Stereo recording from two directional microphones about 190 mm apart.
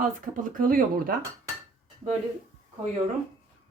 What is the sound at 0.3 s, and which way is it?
Speech, 45° right (ahead or behind).